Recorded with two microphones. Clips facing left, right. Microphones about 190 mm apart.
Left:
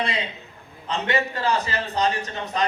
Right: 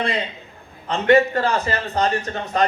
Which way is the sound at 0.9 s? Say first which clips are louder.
Right 9 dB; 50° right (ahead or behind).